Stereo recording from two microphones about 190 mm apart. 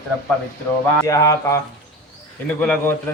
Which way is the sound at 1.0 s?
15° left (ahead or behind).